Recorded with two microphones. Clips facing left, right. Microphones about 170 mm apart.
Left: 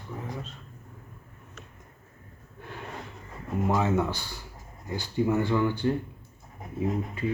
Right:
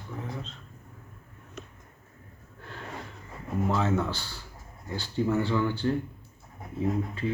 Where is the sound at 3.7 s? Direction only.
15° left (ahead or behind).